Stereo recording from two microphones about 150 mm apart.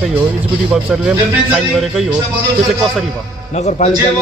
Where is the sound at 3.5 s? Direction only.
50° left (ahead or behind).